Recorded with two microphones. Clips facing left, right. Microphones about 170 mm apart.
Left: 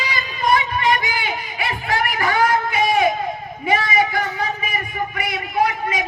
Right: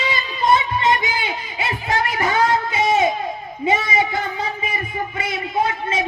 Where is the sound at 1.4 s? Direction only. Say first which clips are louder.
Even; 20° right (ahead or behind).